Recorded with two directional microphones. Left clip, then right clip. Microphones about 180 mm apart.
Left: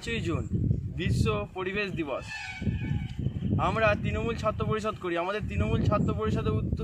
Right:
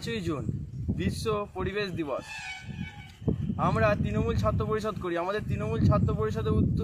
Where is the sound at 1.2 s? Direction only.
15° left (ahead or behind).